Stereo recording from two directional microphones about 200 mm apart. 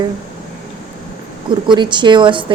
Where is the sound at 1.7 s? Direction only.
25° right (ahead or behind).